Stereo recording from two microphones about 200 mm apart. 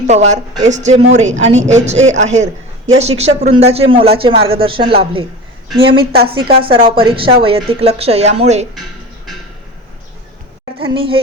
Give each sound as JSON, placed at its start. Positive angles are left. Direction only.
{"t": 0.1, "sound": "a woman's voice", "side_deg": -35}
{"t": 10.8, "sound": "a woman's voice", "side_deg": -25}